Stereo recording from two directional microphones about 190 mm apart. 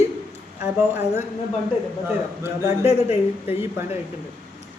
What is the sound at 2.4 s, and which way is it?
Speech, 15° right (ahead or behind).